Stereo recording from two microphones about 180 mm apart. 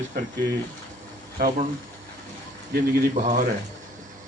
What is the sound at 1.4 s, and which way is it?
Speech, 50° right (ahead or behind).